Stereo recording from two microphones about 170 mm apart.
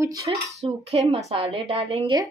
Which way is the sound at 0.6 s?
40° right (ahead or behind).